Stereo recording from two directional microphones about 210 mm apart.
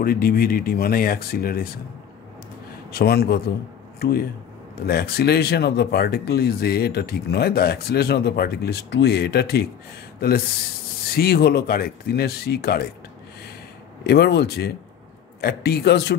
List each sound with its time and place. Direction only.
0.0 s speech: 45° left (ahead or behind)
2.9 s speech: 50° left (ahead or behind)
11.1 s speech: 50° left (ahead or behind)
14.0 s speech: 50° left (ahead or behind)